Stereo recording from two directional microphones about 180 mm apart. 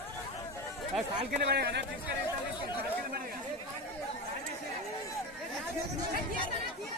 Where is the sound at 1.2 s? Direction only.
60° right (ahead or behind).